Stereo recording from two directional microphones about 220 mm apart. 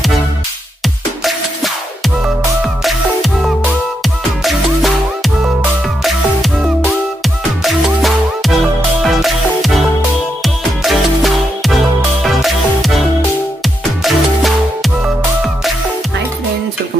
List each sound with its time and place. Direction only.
0.8 s music: centre (ahead or behind)
14.0 s music: centre (ahead or behind)